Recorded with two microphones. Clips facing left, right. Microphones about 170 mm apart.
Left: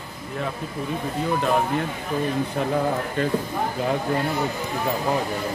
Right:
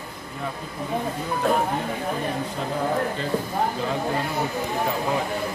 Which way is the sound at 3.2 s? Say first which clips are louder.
Left 5 dB; 55° left (ahead or behind).